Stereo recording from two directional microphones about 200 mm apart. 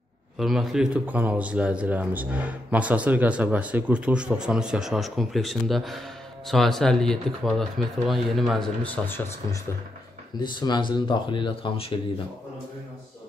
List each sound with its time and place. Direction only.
0.4 s speech: centre (ahead or behind)
10.4 s speech: 20° left (ahead or behind)